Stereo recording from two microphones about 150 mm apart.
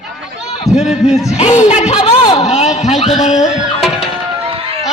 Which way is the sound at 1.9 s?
30° left (ahead or behind).